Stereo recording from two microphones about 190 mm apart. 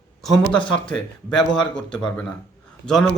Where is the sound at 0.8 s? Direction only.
5° left (ahead or behind).